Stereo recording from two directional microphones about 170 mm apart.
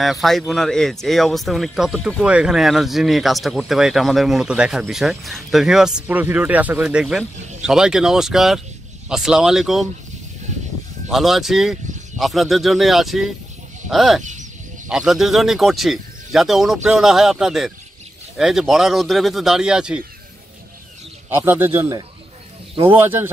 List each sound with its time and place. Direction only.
0.0 s speech: centre (ahead or behind)
11.1 s speech: centre (ahead or behind)
14.2 s bird: 45° right (ahead or behind)
14.9 s speech: 5° right (ahead or behind)
21.3 s speech: 10° right (ahead or behind)